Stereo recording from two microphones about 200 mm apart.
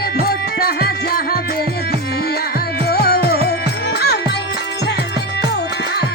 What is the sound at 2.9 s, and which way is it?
Music, 50° left (ahead or behind).